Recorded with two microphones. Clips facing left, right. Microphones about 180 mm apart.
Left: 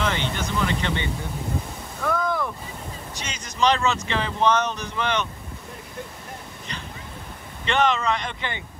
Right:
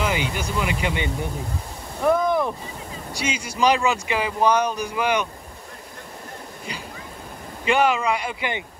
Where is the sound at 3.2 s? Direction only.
10° right (ahead or behind).